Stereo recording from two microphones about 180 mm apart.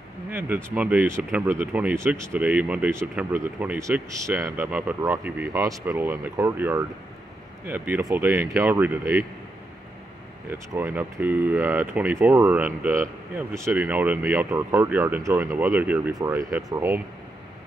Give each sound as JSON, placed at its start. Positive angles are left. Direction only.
{"t": 0.3, "sound": "speech", "side_deg": -10}
{"t": 10.7, "sound": "speech", "side_deg": -10}